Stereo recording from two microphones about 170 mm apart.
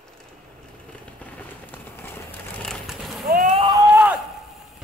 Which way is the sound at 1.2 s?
10° left (ahead or behind).